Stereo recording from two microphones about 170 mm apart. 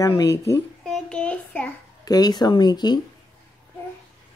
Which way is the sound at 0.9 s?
5° left (ahead or behind).